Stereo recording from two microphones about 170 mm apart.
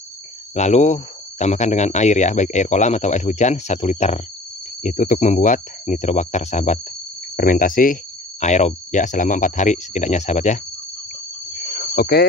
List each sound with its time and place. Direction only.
0.6 s speech: 40° left (ahead or behind)
11.9 s speech: 65° left (ahead or behind)